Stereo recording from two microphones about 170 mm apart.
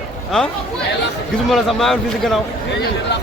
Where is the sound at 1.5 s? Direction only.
Centre (ahead or behind).